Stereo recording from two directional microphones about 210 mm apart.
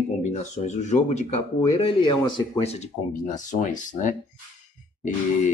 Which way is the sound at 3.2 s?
35° left (ahead or behind).